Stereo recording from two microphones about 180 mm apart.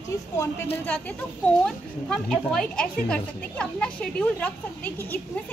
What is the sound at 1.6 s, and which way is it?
Speech, 5° left (ahead or behind).